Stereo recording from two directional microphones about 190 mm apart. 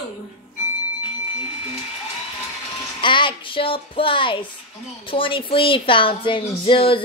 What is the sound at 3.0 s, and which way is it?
Speech, 25° left (ahead or behind).